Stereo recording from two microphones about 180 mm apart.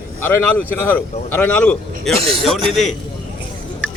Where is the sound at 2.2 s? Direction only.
30° right (ahead or behind).